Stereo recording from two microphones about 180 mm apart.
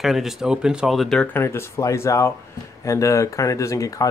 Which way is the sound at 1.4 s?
15° left (ahead or behind).